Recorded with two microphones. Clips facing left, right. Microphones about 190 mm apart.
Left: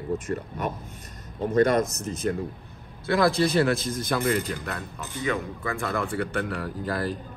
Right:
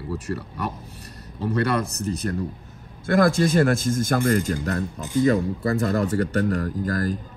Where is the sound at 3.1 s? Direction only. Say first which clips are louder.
Right 3 dB; 50° right (ahead or behind).